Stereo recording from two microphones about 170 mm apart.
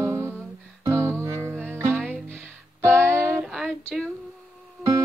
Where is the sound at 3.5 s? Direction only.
Centre (ahead or behind).